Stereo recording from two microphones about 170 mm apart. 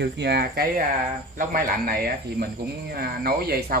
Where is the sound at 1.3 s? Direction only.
55° right (ahead or behind).